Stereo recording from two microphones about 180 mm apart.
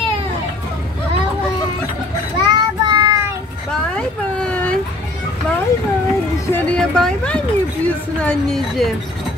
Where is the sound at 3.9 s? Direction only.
5° left (ahead or behind).